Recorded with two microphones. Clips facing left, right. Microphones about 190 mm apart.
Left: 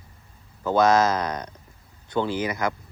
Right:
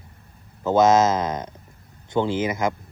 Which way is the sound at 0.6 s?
20° right (ahead or behind).